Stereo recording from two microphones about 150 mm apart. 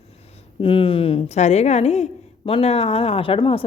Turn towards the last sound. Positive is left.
turn(degrees=35)  # may be behind; listen again after turning